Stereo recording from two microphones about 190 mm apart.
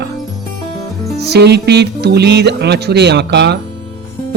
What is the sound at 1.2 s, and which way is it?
Speech, 60° right (ahead or behind).